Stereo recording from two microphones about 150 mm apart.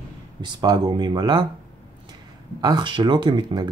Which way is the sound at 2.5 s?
30° right (ahead or behind).